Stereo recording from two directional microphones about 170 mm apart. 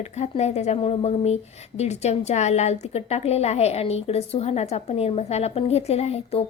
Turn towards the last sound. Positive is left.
turn(degrees=35)  # may be behind; listen again after turning